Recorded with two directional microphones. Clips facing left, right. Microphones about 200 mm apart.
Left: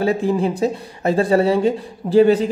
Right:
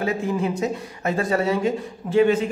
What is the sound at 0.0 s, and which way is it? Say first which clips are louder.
Speech: left 5 dB; 30° left (ahead or behind).